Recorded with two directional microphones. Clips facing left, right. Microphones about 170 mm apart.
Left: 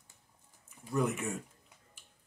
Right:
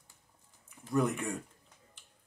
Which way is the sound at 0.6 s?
5° left (ahead or behind).